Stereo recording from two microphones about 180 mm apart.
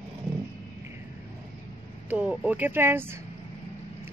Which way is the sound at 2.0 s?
5° right (ahead or behind).